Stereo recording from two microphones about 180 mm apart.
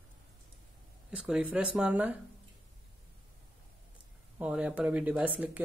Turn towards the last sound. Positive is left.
turn(degrees=-5)  # may be behind; listen again after turning